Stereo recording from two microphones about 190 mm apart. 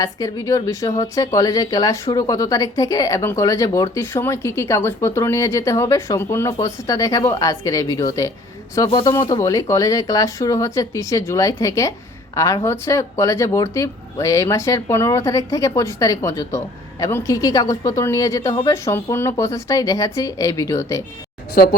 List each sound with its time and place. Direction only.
0.0 s a man's voice: 20° left (ahead or behind)
21.5 s speech: 50° left (ahead or behind)